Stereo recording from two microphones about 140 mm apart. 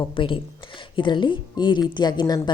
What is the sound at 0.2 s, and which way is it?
Speech, 35° left (ahead or behind).